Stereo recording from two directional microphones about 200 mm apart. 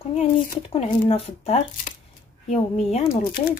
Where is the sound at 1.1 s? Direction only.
30° left (ahead or behind).